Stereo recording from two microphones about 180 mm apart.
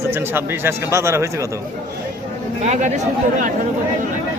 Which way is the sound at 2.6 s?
40° right (ahead or behind).